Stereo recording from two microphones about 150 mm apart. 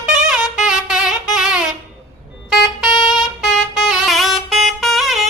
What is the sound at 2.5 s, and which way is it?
Vehicle, centre (ahead or behind).